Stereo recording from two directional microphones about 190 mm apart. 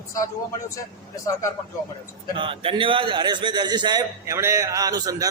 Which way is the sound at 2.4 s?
25° right (ahead or behind).